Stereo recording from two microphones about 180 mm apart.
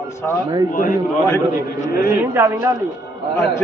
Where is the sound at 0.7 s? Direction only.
50° left (ahead or behind).